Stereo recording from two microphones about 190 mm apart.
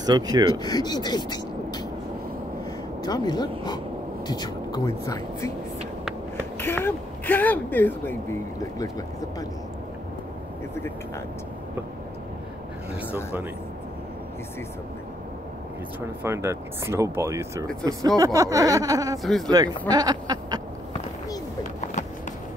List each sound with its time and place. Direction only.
0.0 s speech: 20° right (ahead or behind)
0.6 s speech: 20° left (ahead or behind)
3.0 s speech: 20° left (ahead or behind)
6.6 s speech: 10° left (ahead or behind)
13.1 s speech: 10° right (ahead or behind)
16.2 s speech: 15° right (ahead or behind)
19.2 s speech: centre (ahead or behind)
19.9 s speech: 20° right (ahead or behind)